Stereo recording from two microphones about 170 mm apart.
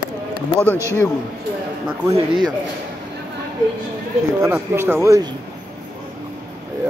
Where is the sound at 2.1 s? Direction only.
25° right (ahead or behind).